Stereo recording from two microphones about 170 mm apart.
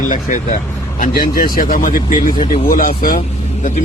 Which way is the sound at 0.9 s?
55° left (ahead or behind).